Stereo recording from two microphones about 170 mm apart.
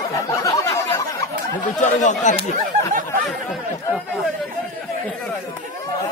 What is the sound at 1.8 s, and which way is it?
Speech, 45° left (ahead or behind).